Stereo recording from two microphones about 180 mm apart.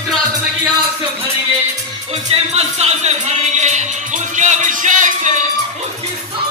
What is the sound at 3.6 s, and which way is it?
Music, 40° right (ahead or behind).